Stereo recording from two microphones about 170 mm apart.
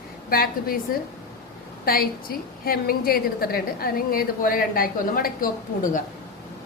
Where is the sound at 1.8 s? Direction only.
60° left (ahead or behind).